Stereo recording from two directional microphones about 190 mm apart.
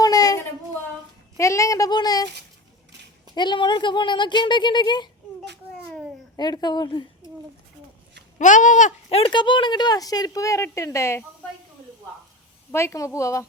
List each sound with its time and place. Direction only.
0.0 s a sound: 20° left (ahead or behind)
1.4 s child singing: 15° left (ahead or behind)
3.3 s speech: 25° left (ahead or behind)
6.3 s speech: 20° left (ahead or behind)
8.4 s speech: 40° left (ahead or behind)
9.0 s speech: 30° left (ahead or behind)
12.7 s child singing: 15° left (ahead or behind)